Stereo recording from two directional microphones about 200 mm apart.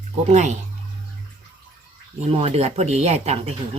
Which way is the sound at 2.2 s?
30° right (ahead or behind).